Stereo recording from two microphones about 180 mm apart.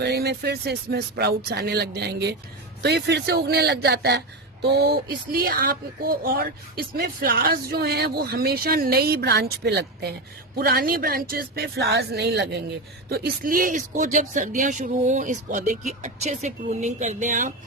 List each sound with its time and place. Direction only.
0.0 s speech: 65° right (ahead or behind)
13.1 s speech: 60° right (ahead or behind)